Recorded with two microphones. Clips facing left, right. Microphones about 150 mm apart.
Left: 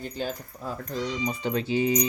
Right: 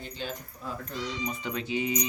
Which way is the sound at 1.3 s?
30° left (ahead or behind).